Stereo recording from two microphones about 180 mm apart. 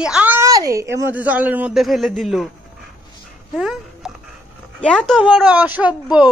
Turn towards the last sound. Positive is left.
turn(degrees=-5)  # may be behind; listen again after turning